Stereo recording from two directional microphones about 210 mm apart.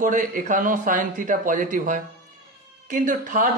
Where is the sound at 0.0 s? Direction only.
40° right (ahead or behind).